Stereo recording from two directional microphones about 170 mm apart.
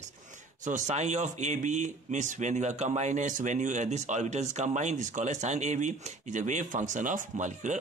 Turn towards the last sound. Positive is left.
turn(degrees=-45)  # may be behind; listen again after turning